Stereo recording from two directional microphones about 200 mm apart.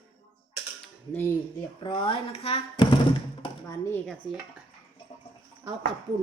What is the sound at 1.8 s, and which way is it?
Speech, 25° left (ahead or behind).